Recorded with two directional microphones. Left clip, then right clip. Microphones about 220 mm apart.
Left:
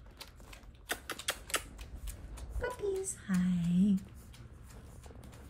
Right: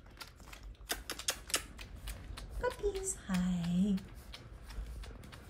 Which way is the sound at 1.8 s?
5° right (ahead or behind).